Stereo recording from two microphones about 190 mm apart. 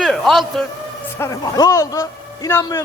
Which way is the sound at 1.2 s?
20° left (ahead or behind).